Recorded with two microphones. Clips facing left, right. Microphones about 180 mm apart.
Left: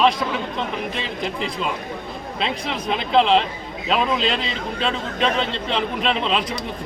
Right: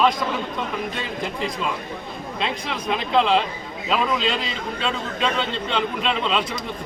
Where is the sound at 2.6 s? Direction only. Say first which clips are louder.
Left 1 dB; 30° left (ahead or behind).